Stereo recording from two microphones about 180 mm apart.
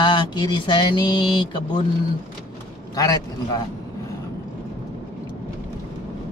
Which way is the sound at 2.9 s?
20° left (ahead or behind).